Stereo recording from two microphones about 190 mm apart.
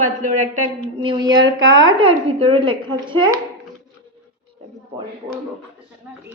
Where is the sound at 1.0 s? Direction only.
25° right (ahead or behind).